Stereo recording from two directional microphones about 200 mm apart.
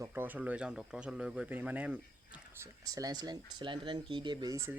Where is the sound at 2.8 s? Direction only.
20° right (ahead or behind).